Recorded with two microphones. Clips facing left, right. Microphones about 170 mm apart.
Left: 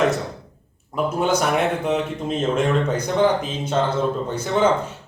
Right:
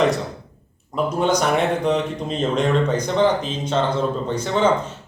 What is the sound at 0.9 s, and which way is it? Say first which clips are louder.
Speech: right 1 dB; 5° left (ahead or behind).